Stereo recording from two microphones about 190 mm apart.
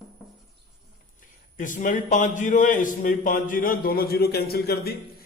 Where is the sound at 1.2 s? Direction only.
45° left (ahead or behind).